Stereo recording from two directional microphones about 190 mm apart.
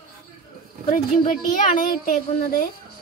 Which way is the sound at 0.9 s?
45° left (ahead or behind).